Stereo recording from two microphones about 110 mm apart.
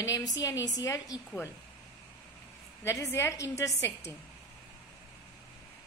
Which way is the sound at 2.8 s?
25° left (ahead or behind).